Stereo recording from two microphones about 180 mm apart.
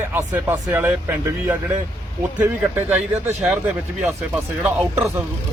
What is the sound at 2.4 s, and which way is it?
Speech, 10° right (ahead or behind).